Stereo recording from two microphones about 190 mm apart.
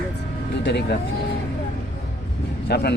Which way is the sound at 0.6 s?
60° left (ahead or behind).